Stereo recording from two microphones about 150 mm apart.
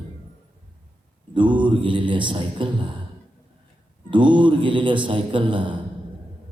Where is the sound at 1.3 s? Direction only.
30° right (ahead or behind).